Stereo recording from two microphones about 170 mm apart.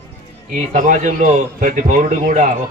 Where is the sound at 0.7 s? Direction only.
50° right (ahead or behind).